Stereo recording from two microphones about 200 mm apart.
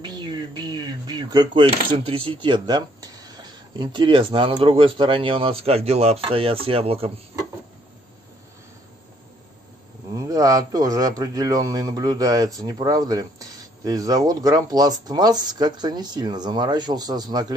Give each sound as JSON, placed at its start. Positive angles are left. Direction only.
{"t": 0.0, "sound": "speech", "side_deg": -20}
{"t": 10.1, "sound": "a man's voice", "side_deg": -15}